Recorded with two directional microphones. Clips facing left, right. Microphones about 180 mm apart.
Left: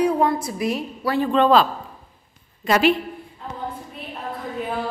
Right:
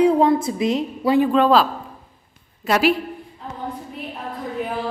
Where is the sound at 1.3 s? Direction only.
5° right (ahead or behind).